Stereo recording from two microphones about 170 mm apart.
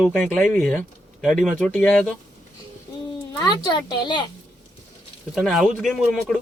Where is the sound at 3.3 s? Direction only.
25° left (ahead or behind).